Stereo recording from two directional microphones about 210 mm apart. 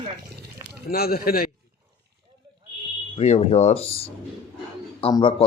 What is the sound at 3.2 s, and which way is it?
Speech, 30° left (ahead or behind).